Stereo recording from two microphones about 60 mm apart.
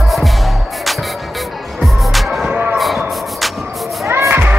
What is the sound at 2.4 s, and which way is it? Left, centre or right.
Music, centre.